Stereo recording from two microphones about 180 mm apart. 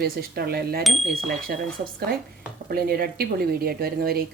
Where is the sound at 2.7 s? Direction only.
60° right (ahead or behind).